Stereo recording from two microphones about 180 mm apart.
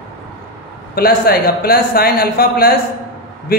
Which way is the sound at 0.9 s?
55° left (ahead or behind).